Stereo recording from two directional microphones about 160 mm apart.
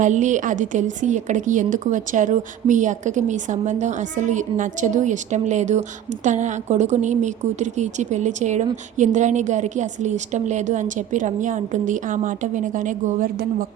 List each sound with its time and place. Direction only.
0.0 s a woman's voice: 50° right (ahead or behind)